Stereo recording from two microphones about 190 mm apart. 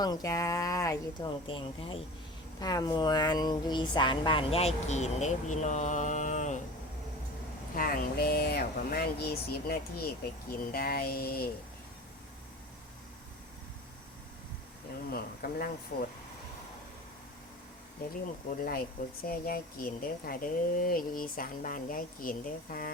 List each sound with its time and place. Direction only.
0.0 s speech: 20° left (ahead or behind); by 6.6 s 40° left (ahead or behind)
7.8 s speech: 50° left (ahead or behind)
15.1 s speech: 50° left (ahead or behind)
18.5 s speech: 50° left (ahead or behind)